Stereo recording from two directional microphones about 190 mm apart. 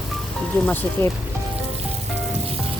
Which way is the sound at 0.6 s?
10° left (ahead or behind).